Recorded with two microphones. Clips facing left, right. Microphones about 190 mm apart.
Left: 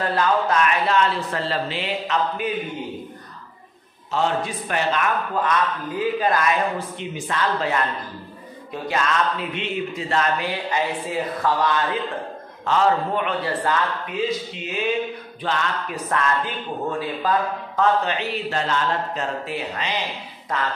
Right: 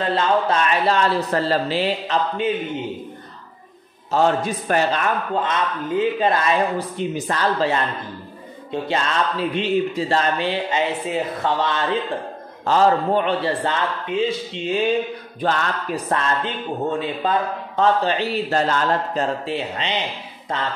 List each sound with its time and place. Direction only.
0.0 s speech: 25° right (ahead or behind)
4.1 s speech: 40° right (ahead or behind)
5.3 s a man's voice: 25° right (ahead or behind)
7.0 s speech: 40° right (ahead or behind)
8.8 s a man's voice: 30° right (ahead or behind)